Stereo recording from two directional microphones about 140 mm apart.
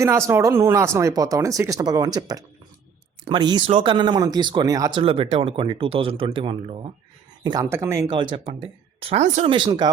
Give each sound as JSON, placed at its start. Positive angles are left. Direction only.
{"t": 0.0, "sound": "speech", "side_deg": -20}
{"t": 4.9, "sound": "speech", "side_deg": -40}
{"t": 7.6, "sound": "speech", "side_deg": -20}
{"t": 8.1, "sound": "speech", "side_deg": -35}
{"t": 9.0, "sound": "speech", "side_deg": -50}
{"t": 9.5, "sound": "speech", "side_deg": -35}